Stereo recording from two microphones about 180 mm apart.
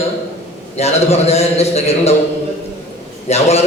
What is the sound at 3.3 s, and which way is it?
Speech, 35° left (ahead or behind).